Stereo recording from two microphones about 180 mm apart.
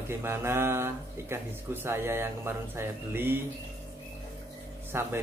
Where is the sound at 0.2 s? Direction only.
15° right (ahead or behind).